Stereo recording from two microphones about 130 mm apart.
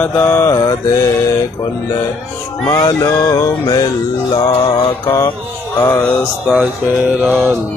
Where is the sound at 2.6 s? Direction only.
35° left (ahead or behind).